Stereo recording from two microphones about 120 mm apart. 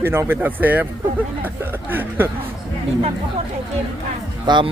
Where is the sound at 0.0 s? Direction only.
20° right (ahead or behind).